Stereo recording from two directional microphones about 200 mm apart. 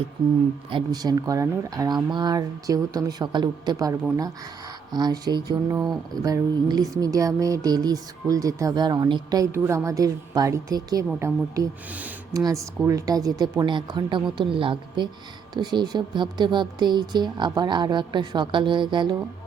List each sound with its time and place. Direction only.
0.7 s speech: 20° right (ahead or behind)
4.9 s mantra: 20° right (ahead or behind)
12.4 s speech: 15° right (ahead or behind)